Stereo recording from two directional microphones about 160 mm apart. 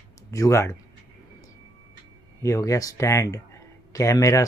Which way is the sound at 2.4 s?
20° left (ahead or behind).